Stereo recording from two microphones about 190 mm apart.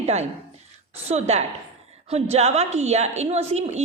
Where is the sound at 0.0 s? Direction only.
35° right (ahead or behind).